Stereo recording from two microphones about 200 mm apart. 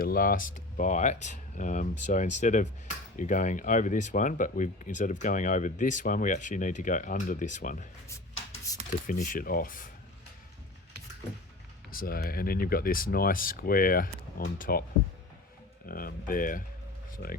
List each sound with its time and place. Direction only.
0.0 s speech: 45° left (ahead or behind)
9.0 s speech: 40° left (ahead or behind)
11.9 s speech: 50° left (ahead or behind)
15.9 s speech: 45° left (ahead or behind)